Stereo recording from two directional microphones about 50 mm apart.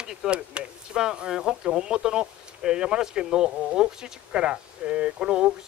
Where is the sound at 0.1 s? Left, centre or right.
Centre.